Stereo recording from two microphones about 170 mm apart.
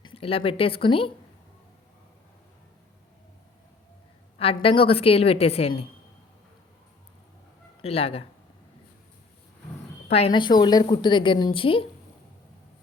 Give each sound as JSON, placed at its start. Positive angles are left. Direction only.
{"t": 0.0, "sound": "speech", "side_deg": 30}
{"t": 4.4, "sound": "a woman's voice", "side_deg": 35}
{"t": 7.8, "sound": "speech", "side_deg": 35}
{"t": 10.1, "sound": "a woman's voice", "side_deg": 35}